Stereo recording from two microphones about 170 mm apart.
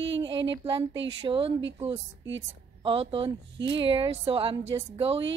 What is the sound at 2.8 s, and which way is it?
A woman's voice, 30° right (ahead or behind).